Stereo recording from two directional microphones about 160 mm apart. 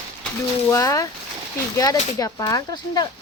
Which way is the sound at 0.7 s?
20° left (ahead or behind).